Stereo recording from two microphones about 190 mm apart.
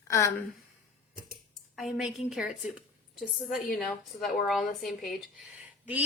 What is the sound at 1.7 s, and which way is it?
A woman's voice, centre (ahead or behind).